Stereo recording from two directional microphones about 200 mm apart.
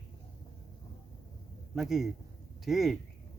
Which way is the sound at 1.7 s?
Centre (ahead or behind).